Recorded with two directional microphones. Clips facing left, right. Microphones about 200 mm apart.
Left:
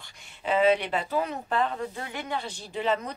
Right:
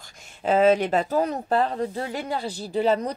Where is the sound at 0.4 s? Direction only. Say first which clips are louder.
Right 4 dB; 40° right (ahead or behind).